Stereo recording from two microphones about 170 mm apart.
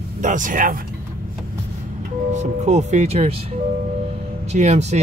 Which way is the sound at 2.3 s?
45° right (ahead or behind).